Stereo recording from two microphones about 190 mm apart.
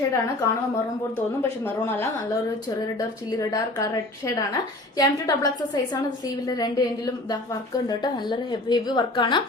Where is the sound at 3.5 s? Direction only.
20° left (ahead or behind).